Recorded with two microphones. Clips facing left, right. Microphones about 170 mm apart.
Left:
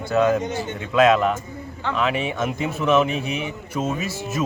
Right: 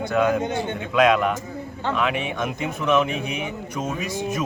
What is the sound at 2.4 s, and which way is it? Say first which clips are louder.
Speech: left 2 dB; 5° left (ahead or behind).